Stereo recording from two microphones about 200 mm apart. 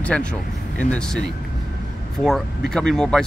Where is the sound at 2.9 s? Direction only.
5° left (ahead or behind).